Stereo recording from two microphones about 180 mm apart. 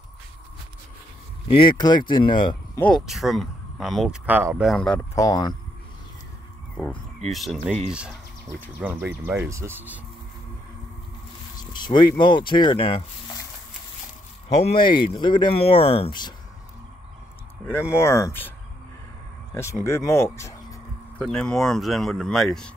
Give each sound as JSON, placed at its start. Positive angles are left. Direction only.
{"t": 1.5, "sound": "speech", "side_deg": 25}
{"t": 2.8, "sound": "speech", "side_deg": 0}
{"t": 4.6, "sound": "speech", "side_deg": 5}
{"t": 5.1, "sound": "speech", "side_deg": 20}
{"t": 7.2, "sound": "speech", "side_deg": 0}
{"t": 11.5, "sound": "speech", "side_deg": 25}
{"t": 14.5, "sound": "speech", "side_deg": 35}
{"t": 17.9, "sound": "speech", "side_deg": 15}
{"t": 19.5, "sound": "speech", "side_deg": 15}
{"t": 21.2, "sound": "speech", "side_deg": 5}